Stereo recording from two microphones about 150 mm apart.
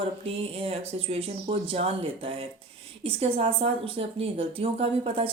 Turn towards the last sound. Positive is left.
turn(degrees=-40)  # may be behind; listen again after turning